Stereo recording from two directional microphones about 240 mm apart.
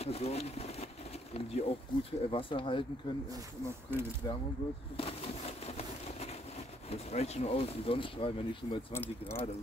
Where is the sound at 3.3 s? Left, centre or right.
Centre.